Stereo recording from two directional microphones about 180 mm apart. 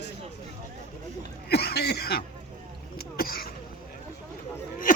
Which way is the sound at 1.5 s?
65° left (ahead or behind).